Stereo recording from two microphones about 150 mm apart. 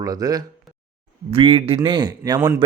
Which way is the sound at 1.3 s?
40° right (ahead or behind).